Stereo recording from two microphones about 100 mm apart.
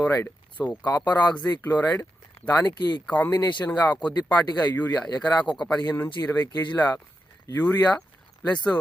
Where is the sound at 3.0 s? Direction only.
15° left (ahead or behind).